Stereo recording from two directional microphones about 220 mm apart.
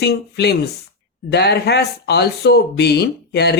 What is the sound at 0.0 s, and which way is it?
Speech, 50° left (ahead or behind).